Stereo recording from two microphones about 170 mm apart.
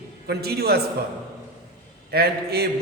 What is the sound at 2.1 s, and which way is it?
Speech, 70° right (ahead or behind).